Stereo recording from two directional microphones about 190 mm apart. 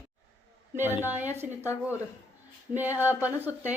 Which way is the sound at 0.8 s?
10° right (ahead or behind).